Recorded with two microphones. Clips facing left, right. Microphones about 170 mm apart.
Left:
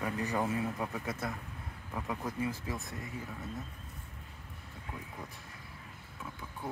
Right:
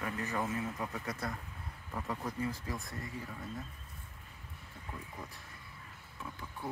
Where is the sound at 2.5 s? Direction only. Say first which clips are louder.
Left 2 dB; 25° left (ahead or behind).